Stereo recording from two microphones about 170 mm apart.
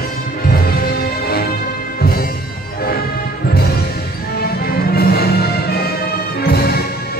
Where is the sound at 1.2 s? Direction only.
65° left (ahead or behind).